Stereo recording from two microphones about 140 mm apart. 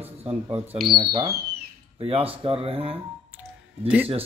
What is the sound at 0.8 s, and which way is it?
Speech, 35° right (ahead or behind).